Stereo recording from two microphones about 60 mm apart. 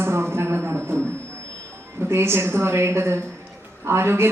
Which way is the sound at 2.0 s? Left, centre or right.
Right.